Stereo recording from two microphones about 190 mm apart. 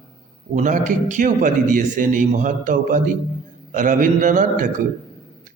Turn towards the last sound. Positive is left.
turn(degrees=-45)  # may be behind; listen again after turning